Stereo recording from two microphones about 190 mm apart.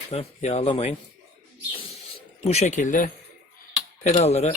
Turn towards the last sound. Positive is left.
turn(degrees=35)  # may be behind; listen again after turning